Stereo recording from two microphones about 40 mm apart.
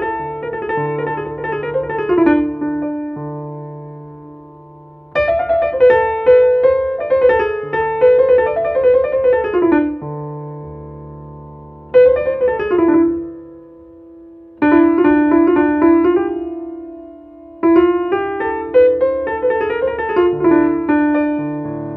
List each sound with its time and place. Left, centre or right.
0.0 s music: centre
5.1 s music: centre
11.9 s music: centre
14.6 s music: centre